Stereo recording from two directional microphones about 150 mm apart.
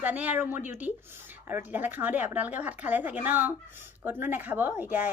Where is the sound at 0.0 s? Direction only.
10° right (ahead or behind).